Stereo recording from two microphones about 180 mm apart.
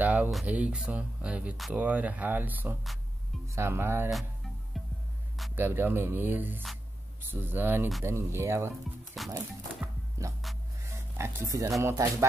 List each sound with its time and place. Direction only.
0.0 s speech: 10° right (ahead or behind)
4.7 s music: centre (ahead or behind)
5.6 s speech: 10° right (ahead or behind)
9.2 s speech: centre (ahead or behind)
11.1 s speech: 15° right (ahead or behind)